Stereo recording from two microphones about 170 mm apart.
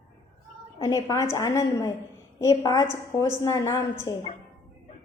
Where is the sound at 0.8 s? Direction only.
20° left (ahead or behind).